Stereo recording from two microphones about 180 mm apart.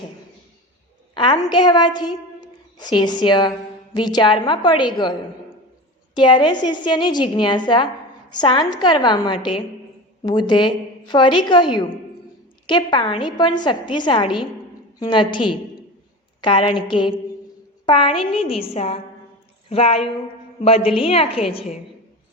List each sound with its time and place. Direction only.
1.1 s a sound: 25° left (ahead or behind)
1.5 s a woman's voice: 25° left (ahead or behind)
6.1 s a woman's voice: 25° left (ahead or behind)
16.4 s a woman's voice: 30° left (ahead or behind)